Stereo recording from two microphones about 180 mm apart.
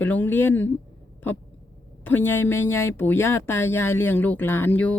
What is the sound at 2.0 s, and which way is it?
Speech, 10° left (ahead or behind).